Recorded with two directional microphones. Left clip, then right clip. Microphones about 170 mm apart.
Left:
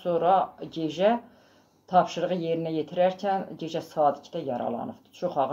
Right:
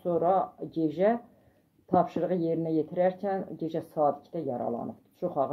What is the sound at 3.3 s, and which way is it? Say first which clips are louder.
Speech: left 3 dB; 25° right (ahead or behind).